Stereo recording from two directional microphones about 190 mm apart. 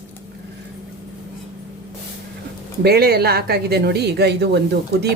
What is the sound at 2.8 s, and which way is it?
A woman's voice, 55° right (ahead or behind).